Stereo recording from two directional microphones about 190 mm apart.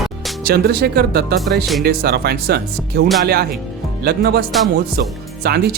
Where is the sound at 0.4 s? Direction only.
55° right (ahead or behind).